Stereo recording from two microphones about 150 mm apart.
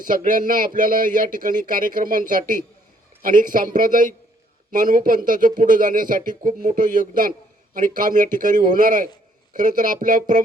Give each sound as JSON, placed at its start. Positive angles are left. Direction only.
{"t": 0.0, "sound": "a man's voice", "side_deg": -65}